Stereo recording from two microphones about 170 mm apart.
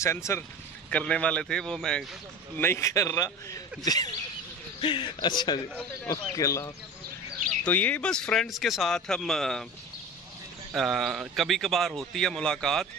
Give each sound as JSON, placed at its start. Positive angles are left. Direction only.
{"t": 0.0, "sound": "a man's voice", "side_deg": 15}
{"t": 7.6, "sound": "a man's voice", "side_deg": 10}
{"t": 10.7, "sound": "a man's voice", "side_deg": 0}